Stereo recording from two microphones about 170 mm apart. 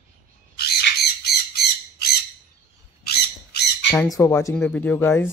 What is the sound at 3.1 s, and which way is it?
Squawk, 70° left (ahead or behind).